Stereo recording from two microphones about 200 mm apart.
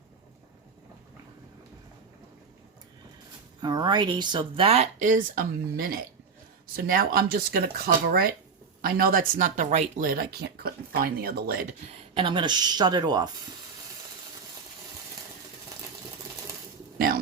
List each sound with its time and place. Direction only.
3.6 s speech: 20° right (ahead or behind); by 11.6 s 50° right (ahead or behind)
12.1 s speech: 25° right (ahead or behind)